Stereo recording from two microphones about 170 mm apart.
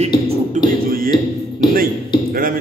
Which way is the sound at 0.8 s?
60° right (ahead or behind).